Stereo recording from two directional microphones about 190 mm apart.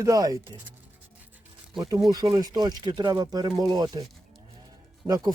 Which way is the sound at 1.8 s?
20° right (ahead or behind).